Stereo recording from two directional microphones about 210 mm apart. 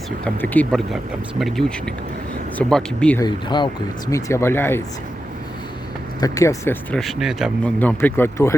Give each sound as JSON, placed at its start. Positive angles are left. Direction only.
{"t": 0.5, "sound": "speech", "side_deg": 5}
{"t": 3.2, "sound": "speech", "side_deg": 20}
{"t": 6.1, "sound": "speech", "side_deg": 15}